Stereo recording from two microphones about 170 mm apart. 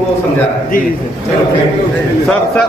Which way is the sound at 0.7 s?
55° left (ahead or behind).